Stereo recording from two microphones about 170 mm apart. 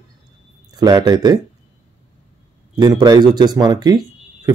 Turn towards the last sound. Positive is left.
turn(degrees=-25)  # may be behind; listen again after turning